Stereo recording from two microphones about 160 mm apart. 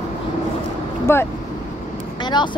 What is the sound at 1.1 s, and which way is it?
Speech, 15° left (ahead or behind).